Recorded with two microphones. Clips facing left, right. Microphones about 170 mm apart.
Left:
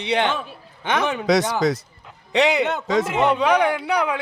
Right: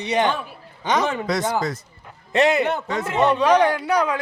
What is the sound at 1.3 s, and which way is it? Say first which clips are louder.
Speech: left 4 dB; 75° left (ahead or behind).